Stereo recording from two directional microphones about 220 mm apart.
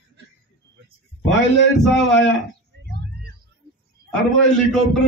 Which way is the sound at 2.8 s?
50° right (ahead or behind).